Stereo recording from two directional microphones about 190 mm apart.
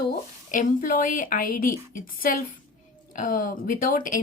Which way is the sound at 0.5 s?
45° left (ahead or behind).